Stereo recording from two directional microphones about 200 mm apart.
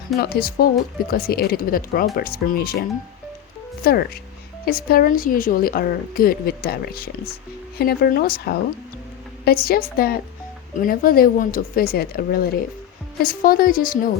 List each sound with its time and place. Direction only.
0.2 s speech: 50° left (ahead or behind)
3.8 s speech: 50° left (ahead or behind)